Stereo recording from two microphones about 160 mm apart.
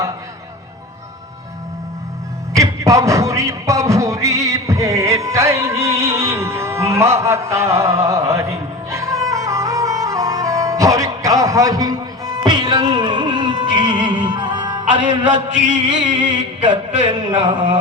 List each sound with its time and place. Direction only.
2.6 s music: 20° right (ahead or behind)
14.9 s a sound: 35° right (ahead or behind)
16.1 s music: 30° right (ahead or behind)